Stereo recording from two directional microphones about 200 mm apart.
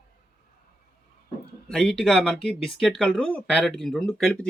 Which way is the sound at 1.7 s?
5° left (ahead or behind).